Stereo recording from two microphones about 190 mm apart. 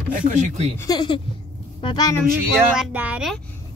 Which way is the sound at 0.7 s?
20° left (ahead or behind).